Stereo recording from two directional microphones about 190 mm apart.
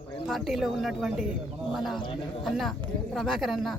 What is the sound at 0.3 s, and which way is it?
Speech, centre (ahead or behind).